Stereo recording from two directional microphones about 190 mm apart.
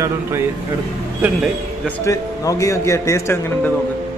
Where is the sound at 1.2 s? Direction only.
Centre (ahead or behind).